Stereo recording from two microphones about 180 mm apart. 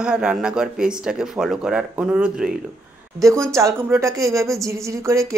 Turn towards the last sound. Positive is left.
turn(degrees=-15)  # may be behind; listen again after turning